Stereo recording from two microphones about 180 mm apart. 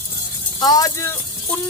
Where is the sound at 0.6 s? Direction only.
20° left (ahead or behind).